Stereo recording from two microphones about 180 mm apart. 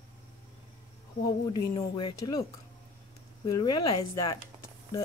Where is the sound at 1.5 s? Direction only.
20° left (ahead or behind).